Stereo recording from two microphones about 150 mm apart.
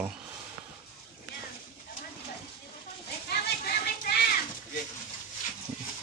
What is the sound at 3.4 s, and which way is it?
Children playing, 90° left.